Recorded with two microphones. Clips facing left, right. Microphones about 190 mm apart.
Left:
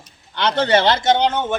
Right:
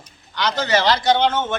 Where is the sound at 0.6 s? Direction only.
30° left (ahead or behind).